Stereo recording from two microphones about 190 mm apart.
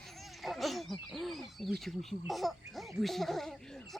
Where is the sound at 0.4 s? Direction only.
Centre (ahead or behind).